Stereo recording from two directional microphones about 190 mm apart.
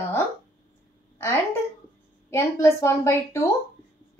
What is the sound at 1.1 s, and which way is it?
A woman's voice, 15° left (ahead or behind).